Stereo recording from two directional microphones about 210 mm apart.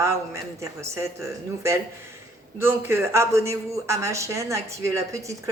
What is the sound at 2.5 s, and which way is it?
A woman's voice, 10° right (ahead or behind).